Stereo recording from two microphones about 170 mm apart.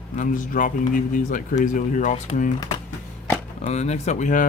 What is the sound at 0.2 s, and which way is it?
Speech, 50° left (ahead or behind).